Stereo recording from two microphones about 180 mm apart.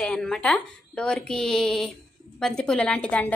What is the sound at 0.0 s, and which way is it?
A woman's voice, 5° left (ahead or behind).